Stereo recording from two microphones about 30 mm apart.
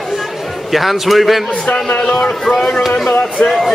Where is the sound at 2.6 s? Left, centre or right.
Left.